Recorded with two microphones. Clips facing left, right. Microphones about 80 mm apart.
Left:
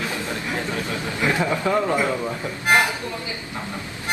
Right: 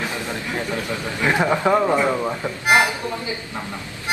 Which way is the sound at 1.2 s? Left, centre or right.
Right.